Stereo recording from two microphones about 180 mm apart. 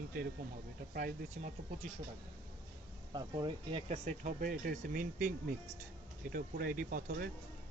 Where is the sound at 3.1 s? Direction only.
25° right (ahead or behind); by 5.1 s 50° right (ahead or behind).